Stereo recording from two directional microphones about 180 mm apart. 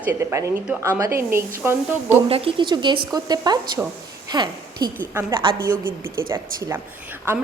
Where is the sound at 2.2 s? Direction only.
30° right (ahead or behind).